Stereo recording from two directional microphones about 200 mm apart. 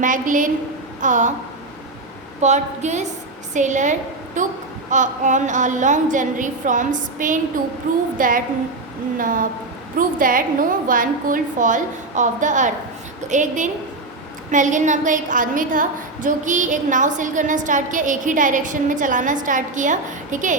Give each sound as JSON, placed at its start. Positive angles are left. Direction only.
{"t": 0.0, "sound": "a woman's voice", "side_deg": -40}
{"t": 2.4, "sound": "a woman's voice", "side_deg": -35}